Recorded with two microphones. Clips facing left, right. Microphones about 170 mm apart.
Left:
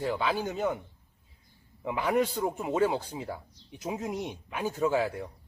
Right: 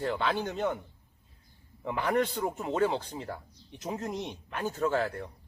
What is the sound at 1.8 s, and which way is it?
A man's voice, 5° left (ahead or behind).